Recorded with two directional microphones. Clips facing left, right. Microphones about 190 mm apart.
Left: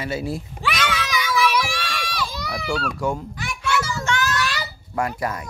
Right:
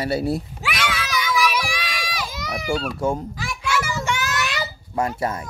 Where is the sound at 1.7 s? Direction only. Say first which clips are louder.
Even; 15° right (ahead or behind).